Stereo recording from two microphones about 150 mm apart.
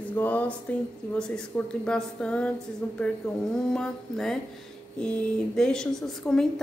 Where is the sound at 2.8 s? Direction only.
10° left (ahead or behind).